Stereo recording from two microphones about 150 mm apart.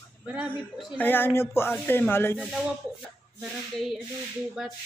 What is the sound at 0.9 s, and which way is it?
Speech, 15° left (ahead or behind).